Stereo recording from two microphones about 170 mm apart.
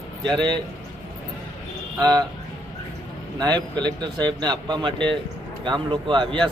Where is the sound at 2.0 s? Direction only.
20° right (ahead or behind).